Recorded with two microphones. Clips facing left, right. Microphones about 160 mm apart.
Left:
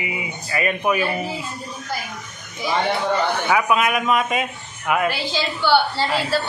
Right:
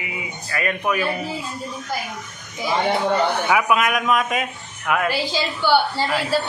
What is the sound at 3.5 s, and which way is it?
A man's voice, centre (ahead or behind).